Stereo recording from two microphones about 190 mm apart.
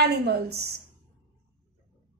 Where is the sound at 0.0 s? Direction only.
60° right (ahead or behind).